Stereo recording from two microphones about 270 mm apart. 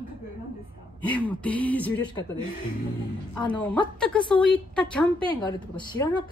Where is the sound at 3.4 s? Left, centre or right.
Centre.